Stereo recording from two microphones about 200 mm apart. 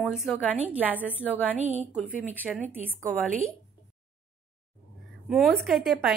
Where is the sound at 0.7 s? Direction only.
5° right (ahead or behind).